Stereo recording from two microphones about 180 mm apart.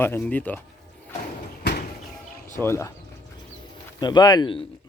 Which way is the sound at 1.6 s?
65° left (ahead or behind).